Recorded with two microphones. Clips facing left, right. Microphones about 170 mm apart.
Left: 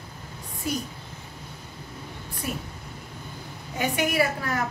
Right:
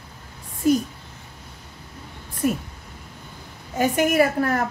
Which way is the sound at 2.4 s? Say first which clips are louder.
Right 10 dB; 50° right (ahead or behind).